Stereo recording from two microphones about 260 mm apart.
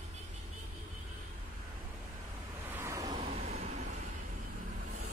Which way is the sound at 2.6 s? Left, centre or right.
Centre.